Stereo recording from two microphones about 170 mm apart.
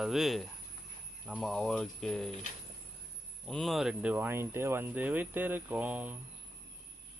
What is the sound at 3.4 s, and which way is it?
Speech, centre (ahead or behind).